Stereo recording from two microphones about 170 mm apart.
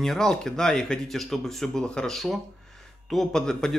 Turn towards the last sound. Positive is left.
turn(degrees=5)  # may be behind; listen again after turning